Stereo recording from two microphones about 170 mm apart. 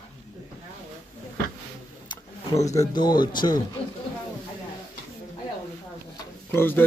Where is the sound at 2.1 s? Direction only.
20° left (ahead or behind).